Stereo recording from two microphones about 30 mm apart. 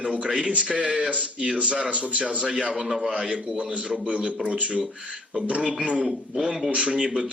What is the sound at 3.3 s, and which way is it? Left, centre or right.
Speech, right.